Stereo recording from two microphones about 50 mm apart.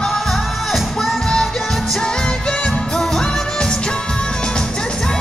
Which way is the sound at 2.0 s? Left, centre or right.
Centre.